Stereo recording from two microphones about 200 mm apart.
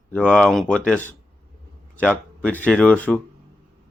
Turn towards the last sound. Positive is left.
turn(degrees=5)  # may be behind; listen again after turning